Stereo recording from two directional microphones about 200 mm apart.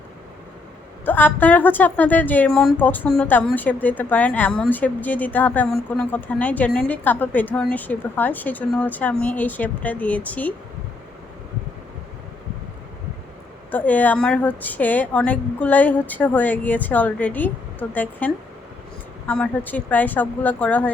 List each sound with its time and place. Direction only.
1.0 s a woman's voice: 10° left (ahead or behind)
13.7 s a woman's voice: 10° left (ahead or behind)
19.3 s a woman's voice: 10° left (ahead or behind)